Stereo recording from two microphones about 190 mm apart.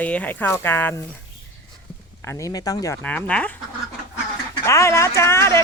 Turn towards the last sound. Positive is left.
turn(degrees=15)  # may be behind; listen again after turning